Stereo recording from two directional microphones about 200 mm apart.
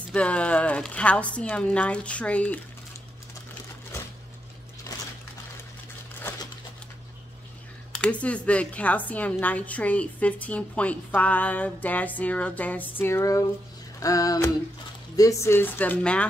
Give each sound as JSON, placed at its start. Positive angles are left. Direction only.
{"t": 0.1, "sound": "a woman's voice", "side_deg": 5}
{"t": 4.9, "sound": "a sound", "side_deg": 20}
{"t": 7.9, "sound": "a woman's voice", "side_deg": 5}